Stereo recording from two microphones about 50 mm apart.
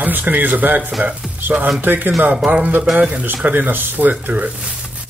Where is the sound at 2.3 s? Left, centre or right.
Right.